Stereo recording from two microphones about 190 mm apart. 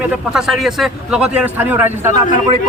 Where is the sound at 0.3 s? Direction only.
Centre (ahead or behind).